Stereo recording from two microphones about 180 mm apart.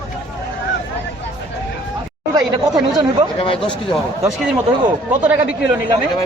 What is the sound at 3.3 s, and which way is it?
Speech, 30° left (ahead or behind).